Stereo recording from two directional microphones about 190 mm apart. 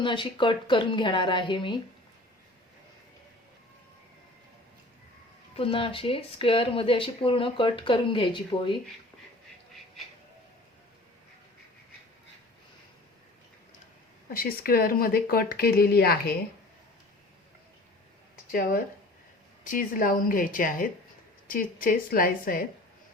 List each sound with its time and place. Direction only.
0.0 s speech: 25° left (ahead or behind)
5.5 s speech: 30° left (ahead or behind)
14.3 s speech: 50° left (ahead or behind)
19.6 s speech: 45° left (ahead or behind)